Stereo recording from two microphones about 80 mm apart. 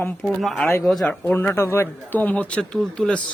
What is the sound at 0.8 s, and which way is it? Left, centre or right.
Speech, centre.